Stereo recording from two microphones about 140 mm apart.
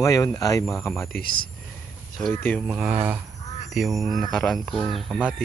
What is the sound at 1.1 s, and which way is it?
Speech, 90° left.